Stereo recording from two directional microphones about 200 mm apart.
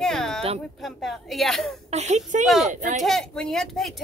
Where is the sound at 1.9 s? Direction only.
35° right (ahead or behind).